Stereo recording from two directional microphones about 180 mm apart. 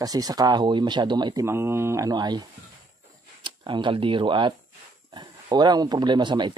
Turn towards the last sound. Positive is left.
turn(degrees=-25)  # may be behind; listen again after turning